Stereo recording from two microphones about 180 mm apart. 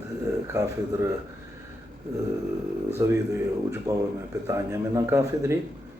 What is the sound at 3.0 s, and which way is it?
Speech, 15° right (ahead or behind).